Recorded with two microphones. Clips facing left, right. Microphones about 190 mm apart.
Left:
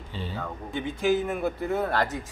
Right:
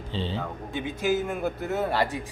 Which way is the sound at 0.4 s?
5° right (ahead or behind).